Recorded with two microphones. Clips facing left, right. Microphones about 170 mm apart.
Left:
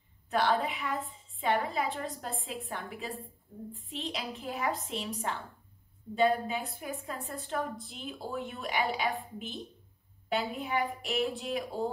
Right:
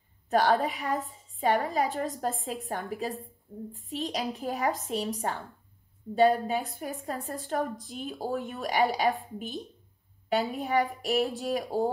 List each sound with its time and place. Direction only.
0.3 s a woman's voice: 40° right (ahead or behind)
10.3 s a woman's voice: 40° right (ahead or behind)